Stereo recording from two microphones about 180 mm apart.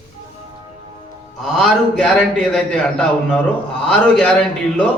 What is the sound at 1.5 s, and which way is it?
A man's voice, 5° left (ahead or behind).